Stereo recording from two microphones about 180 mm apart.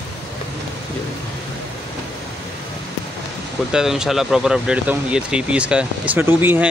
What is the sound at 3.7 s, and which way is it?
Speech, 5° right (ahead or behind).